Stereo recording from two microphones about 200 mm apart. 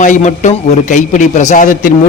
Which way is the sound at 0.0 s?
40° left (ahead or behind).